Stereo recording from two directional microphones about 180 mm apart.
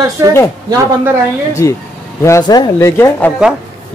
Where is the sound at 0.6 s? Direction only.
20° right (ahead or behind).